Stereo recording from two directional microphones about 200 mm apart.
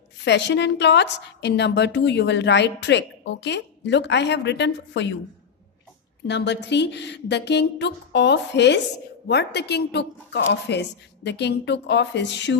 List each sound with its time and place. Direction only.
0.2 s a woman's voice: 60° left (ahead or behind)
6.2 s a woman's voice: 60° left (ahead or behind)